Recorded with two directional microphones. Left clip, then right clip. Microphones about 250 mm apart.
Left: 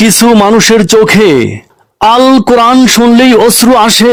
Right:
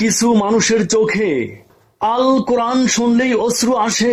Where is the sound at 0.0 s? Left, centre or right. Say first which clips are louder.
Left 10 dB; left.